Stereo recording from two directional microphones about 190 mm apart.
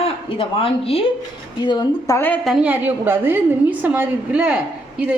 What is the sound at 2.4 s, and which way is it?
A woman's voice, 5° right (ahead or behind).